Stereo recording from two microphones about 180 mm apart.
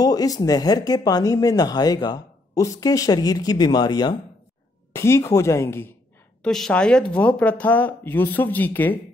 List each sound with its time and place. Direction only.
0.0 s speech: 20° left (ahead or behind)
6.4 s speech: 5° left (ahead or behind)